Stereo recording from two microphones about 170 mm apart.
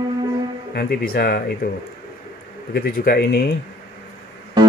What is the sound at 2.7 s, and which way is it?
Speech, 65° left (ahead or behind).